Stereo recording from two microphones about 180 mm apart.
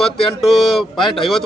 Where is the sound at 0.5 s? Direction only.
Centre (ahead or behind).